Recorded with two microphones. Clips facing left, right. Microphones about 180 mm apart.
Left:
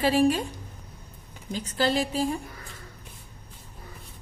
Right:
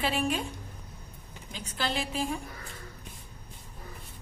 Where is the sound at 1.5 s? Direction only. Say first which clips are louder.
Left 8 dB; 35° left (ahead or behind).